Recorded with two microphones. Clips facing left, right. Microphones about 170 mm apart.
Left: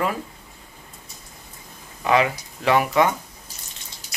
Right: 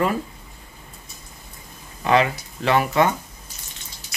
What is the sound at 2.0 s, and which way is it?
Speech, 10° left (ahead or behind).